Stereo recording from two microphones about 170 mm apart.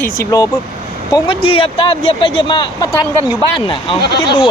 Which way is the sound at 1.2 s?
30° left (ahead or behind).